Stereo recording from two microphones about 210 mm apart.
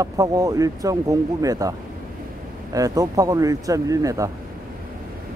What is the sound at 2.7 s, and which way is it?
Speech, 15° right (ahead or behind).